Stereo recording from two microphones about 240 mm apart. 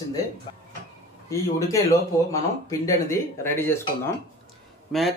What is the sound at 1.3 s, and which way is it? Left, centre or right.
Speech, centre.